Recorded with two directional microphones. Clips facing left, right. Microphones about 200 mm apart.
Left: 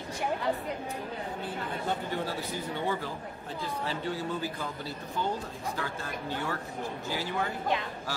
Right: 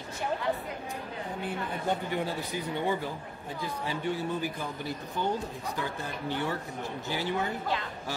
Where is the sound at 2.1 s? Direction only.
15° right (ahead or behind).